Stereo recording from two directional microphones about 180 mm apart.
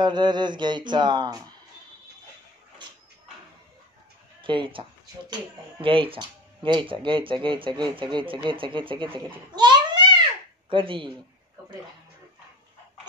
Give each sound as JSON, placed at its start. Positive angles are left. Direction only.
{"t": 0.0, "sound": "speech", "side_deg": -25}
{"t": 4.4, "sound": "speech", "side_deg": -25}
{"t": 9.6, "sound": "a sound", "side_deg": -25}
{"t": 10.7, "sound": "speech", "side_deg": -30}